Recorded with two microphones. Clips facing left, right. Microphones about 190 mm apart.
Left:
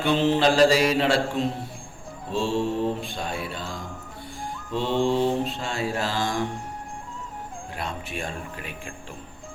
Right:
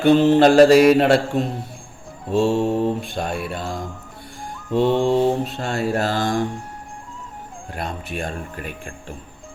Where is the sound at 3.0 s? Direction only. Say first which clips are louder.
Right 5 dB; 55° right (ahead or behind).